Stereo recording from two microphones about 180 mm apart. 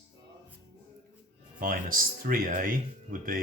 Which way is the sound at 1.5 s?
50° right (ahead or behind).